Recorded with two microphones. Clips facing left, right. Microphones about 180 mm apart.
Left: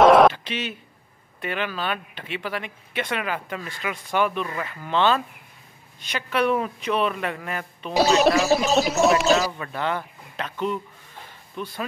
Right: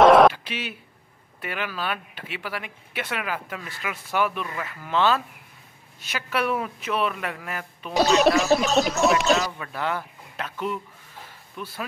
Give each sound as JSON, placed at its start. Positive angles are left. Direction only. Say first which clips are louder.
{"t": 0.0, "sound": "throat clearing", "louder": "even", "side_deg": 0}
{"t": 1.4, "sound": "speech", "louder": "left 3 dB", "side_deg": -5}